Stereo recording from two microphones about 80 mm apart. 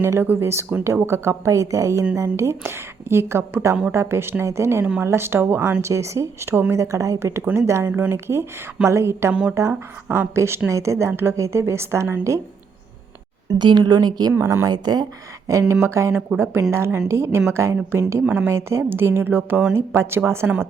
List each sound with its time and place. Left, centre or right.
0.0 s a woman's voice: right
5.8 s speech: right
6.7 s speech: right
7.9 s speech: right
9.3 s speech: centre
9.6 s speech: right
13.5 s a woman's voice: right
14.4 s a woman's voice: right
18.3 s speech: right
18.5 s speech: right